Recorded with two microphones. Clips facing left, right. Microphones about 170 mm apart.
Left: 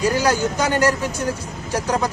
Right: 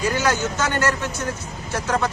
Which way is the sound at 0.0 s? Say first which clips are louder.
Left 3 dB; 35° left (ahead or behind).